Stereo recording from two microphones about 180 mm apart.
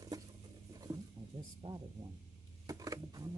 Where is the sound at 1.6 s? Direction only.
30° right (ahead or behind).